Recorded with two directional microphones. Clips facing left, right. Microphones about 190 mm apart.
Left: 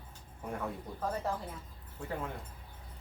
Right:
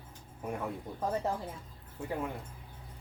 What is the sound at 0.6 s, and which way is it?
Speech, 15° right (ahead or behind).